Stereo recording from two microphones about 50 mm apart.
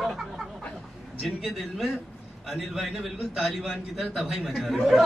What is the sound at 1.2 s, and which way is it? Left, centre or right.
A man's voice, centre.